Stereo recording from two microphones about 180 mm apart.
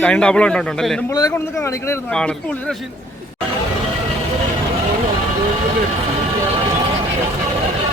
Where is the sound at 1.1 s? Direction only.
20° left (ahead or behind).